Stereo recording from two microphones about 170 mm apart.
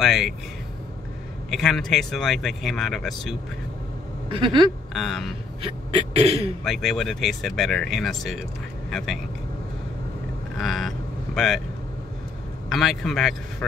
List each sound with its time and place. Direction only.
0.0 s speech: centre (ahead or behind)
1.5 s speech: centre (ahead or behind)
4.3 s a sound: 30° right (ahead or behind)
4.9 s speech: centre (ahead or behind)
5.6 s throat clearing: 30° right (ahead or behind)
6.6 s speech: centre (ahead or behind)
10.6 s speech: centre (ahead or behind)
12.6 s speech: centre (ahead or behind)